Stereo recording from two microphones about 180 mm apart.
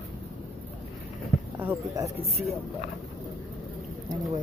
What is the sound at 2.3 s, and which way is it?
Speech, centre (ahead or behind).